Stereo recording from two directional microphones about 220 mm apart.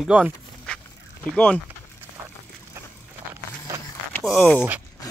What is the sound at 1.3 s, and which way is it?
Speech, 5° left (ahead or behind).